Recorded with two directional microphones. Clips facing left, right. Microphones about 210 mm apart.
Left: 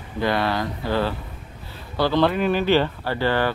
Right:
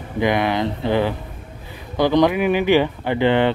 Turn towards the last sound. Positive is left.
turn(degrees=-20)  # may be behind; listen again after turning